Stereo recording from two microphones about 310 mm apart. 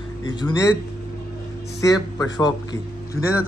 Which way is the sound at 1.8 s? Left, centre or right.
Centre.